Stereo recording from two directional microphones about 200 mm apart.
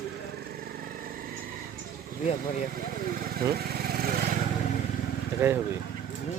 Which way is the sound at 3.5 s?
50° right (ahead or behind).